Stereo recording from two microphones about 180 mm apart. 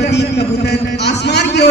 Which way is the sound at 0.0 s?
70° left (ahead or behind).